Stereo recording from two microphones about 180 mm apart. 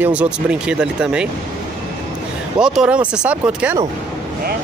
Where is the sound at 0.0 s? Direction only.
5° right (ahead or behind).